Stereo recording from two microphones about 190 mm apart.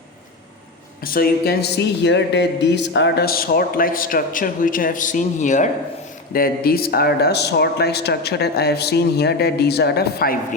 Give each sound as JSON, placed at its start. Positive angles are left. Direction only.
{"t": 1.0, "sound": "speech", "side_deg": 50}
{"t": 6.3, "sound": "speech", "side_deg": 50}